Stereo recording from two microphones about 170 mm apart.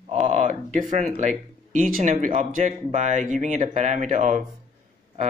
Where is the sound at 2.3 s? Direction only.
45° right (ahead or behind).